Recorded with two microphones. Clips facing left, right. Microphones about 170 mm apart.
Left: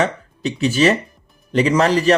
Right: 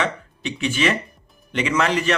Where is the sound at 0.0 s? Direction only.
40° left (ahead or behind).